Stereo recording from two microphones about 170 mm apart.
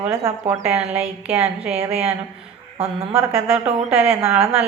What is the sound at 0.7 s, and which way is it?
Speech, 35° right (ahead or behind).